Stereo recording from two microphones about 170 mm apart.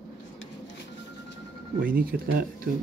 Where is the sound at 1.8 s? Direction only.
55° right (ahead or behind).